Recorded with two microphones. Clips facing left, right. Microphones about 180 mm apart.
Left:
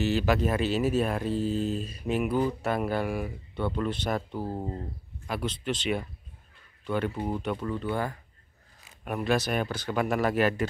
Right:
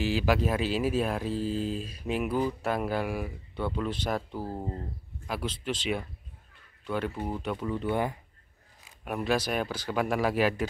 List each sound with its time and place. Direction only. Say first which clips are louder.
0.0 s speech: left 1 dB; 5° right (ahead or behind)
7.2 s speech: left 2 dB; centre (ahead or behind)
7.7 s speech: right 1 dB; 15° right (ahead or behind)
9.0 s speech: left 1 dB; centre (ahead or behind)